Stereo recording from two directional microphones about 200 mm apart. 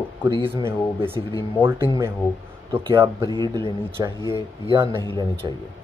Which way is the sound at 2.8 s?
20° right (ahead or behind).